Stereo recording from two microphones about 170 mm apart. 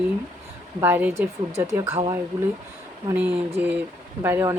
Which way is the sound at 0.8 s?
10° right (ahead or behind).